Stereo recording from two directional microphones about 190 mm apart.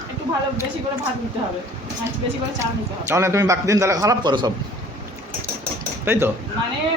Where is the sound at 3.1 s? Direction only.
15° right (ahead or behind).